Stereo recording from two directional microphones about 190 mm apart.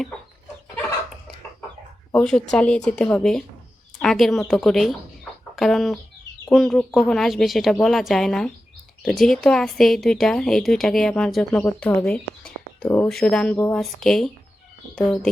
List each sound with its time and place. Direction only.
2.1 s a woman's voice: 5° left (ahead or behind)